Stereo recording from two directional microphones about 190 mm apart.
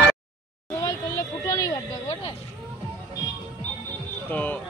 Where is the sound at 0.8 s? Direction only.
15° left (ahead or behind).